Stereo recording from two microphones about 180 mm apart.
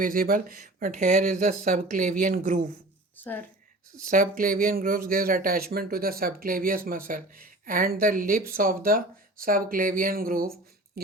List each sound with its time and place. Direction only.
0.0 s speech: 50° right (ahead or behind)
3.2 s speech: 10° left (ahead or behind)
4.1 s speech: 50° right (ahead or behind)